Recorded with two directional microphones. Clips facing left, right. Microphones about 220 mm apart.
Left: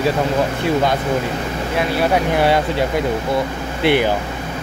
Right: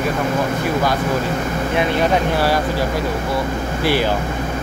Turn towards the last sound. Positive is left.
turn(degrees=20)  # may be behind; listen again after turning